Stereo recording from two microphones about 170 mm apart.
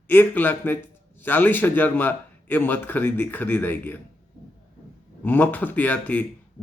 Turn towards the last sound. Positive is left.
turn(degrees=10)  # may be behind; listen again after turning